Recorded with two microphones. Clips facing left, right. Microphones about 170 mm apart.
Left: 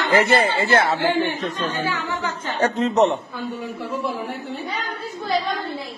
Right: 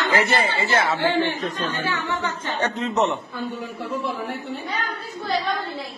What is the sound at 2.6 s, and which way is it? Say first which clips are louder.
Speech: left 5 dB; 40° left (ahead or behind).